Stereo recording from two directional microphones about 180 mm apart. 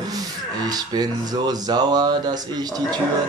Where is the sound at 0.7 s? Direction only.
20° right (ahead or behind).